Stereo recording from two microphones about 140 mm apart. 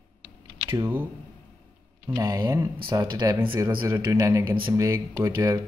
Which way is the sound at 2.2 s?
25° right (ahead or behind).